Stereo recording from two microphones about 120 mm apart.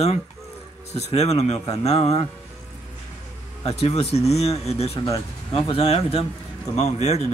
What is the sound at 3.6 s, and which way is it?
Speech, 60° left (ahead or behind).